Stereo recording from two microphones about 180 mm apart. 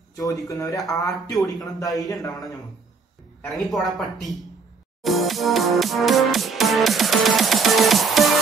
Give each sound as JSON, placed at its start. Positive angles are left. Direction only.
{"t": 0.2, "sound": "speech", "side_deg": 20}
{"t": 3.5, "sound": "speech", "side_deg": 0}
{"t": 5.0, "sound": "music", "side_deg": 0}